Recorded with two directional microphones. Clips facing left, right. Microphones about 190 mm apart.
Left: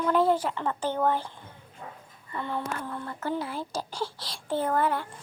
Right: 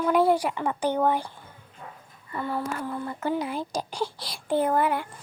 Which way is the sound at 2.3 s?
5° right (ahead or behind).